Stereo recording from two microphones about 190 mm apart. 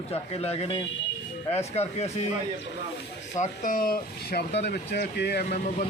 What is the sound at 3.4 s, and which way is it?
Speech, 45° left (ahead or behind).